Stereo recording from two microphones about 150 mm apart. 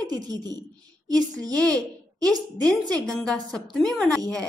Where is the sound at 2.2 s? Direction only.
25° right (ahead or behind).